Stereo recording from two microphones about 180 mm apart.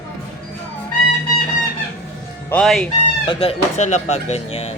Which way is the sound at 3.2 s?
30° left (ahead or behind).